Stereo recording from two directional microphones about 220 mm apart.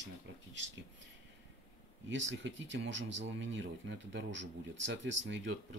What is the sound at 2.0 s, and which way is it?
Speech, 60° right (ahead or behind).